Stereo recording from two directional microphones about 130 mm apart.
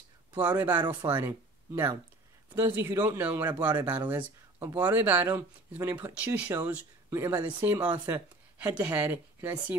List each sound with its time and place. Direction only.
0.3 s speech: 15° right (ahead or behind)
6.1 s speech: 10° right (ahead or behind)